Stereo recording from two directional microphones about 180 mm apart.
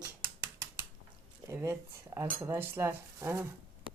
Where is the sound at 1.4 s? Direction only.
15° right (ahead or behind).